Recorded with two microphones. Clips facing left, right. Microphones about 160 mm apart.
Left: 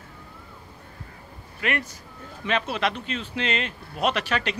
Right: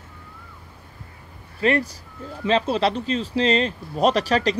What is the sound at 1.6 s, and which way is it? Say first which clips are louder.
Speech: right 8 dB; 30° right (ahead or behind).